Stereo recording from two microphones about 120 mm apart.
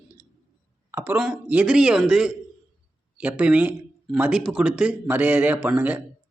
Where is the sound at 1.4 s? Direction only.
10° right (ahead or behind).